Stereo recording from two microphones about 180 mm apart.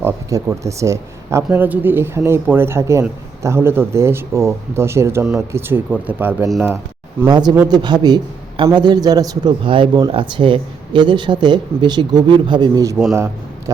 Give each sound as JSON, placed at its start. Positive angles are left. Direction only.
{"t": 0.0, "sound": "speech", "side_deg": -20}
{"t": 7.3, "sound": "a man's voice", "side_deg": -20}